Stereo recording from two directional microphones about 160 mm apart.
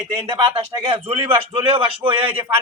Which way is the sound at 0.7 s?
35° right (ahead or behind).